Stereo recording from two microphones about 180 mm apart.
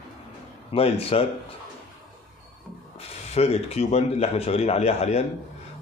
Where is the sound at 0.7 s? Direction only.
30° left (ahead or behind).